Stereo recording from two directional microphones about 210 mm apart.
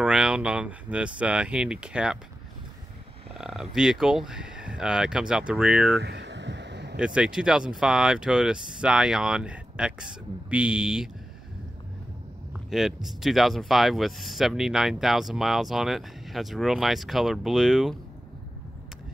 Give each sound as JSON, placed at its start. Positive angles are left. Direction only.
{"t": 0.0, "sound": "speech", "side_deg": -5}
{"t": 3.3, "sound": "speech", "side_deg": -5}
{"t": 6.0, "sound": "a sound", "side_deg": -55}
{"t": 7.0, "sound": "speech", "side_deg": -5}
{"t": 12.6, "sound": "speech", "side_deg": 0}